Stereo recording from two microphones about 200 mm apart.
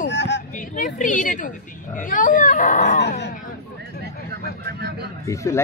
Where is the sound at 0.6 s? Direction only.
40° left (ahead or behind).